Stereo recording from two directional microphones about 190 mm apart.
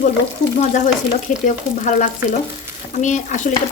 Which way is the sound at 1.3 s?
40° left (ahead or behind).